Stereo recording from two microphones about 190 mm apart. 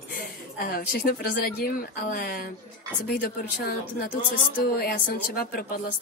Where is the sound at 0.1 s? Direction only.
50° left (ahead or behind).